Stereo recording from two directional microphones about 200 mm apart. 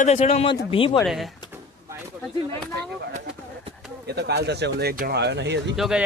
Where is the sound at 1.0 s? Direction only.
Centre (ahead or behind).